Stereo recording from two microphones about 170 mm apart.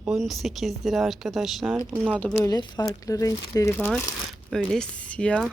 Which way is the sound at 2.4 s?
25° left (ahead or behind).